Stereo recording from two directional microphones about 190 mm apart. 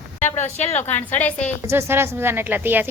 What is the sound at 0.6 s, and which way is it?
Speech, 35° left (ahead or behind).